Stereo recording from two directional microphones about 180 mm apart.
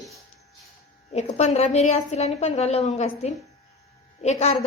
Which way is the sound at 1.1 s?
40° left (ahead or behind).